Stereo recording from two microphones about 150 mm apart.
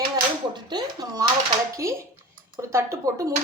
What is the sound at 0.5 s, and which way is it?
Speech, 25° right (ahead or behind).